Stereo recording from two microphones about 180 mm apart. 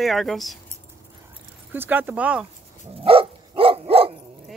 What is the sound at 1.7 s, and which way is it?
Speech, 10° right (ahead or behind).